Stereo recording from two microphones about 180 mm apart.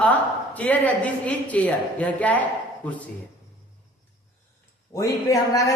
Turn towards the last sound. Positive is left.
turn(degrees=20)  # may be behind; listen again after turning